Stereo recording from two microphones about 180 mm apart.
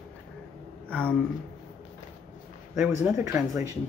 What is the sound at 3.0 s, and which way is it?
Speech, 15° right (ahead or behind).